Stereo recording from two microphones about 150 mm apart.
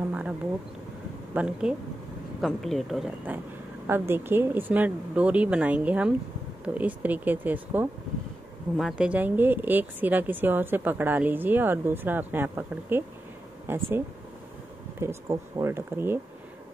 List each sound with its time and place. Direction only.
1.3 s speech: 5° right (ahead or behind)
3.3 s speech: 10° right (ahead or behind)